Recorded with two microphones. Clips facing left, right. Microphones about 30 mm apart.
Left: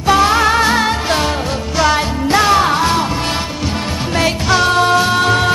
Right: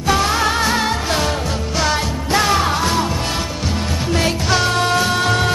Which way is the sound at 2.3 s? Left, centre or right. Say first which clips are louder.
Left 4 dB; centre.